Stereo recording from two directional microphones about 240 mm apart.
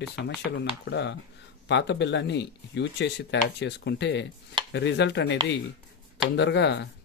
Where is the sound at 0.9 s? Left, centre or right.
Left.